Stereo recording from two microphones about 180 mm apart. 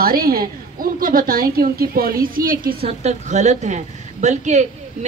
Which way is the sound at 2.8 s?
40° right (ahead or behind).